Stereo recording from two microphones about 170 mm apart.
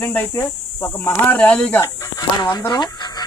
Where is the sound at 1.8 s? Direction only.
20° left (ahead or behind).